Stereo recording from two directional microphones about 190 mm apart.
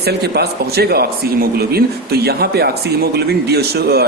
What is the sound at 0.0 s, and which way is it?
A man's voice, 60° right (ahead or behind).